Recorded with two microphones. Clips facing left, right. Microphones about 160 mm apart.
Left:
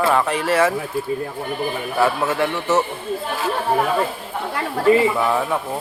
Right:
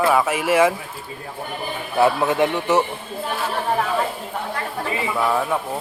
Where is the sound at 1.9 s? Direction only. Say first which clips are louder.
Right 3 dB; 20° right (ahead or behind).